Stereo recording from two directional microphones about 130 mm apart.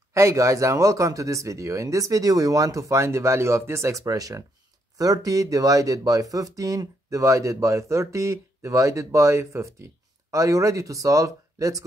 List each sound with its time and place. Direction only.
0.1 s speech: 20° right (ahead or behind)